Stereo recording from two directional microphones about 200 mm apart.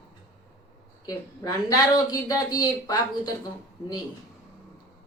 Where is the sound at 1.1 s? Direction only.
15° left (ahead or behind).